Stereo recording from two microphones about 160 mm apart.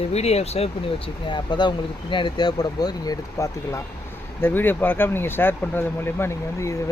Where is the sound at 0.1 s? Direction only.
40° left (ahead or behind).